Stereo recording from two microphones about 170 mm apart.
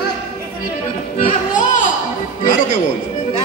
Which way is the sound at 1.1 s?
40° left (ahead or behind).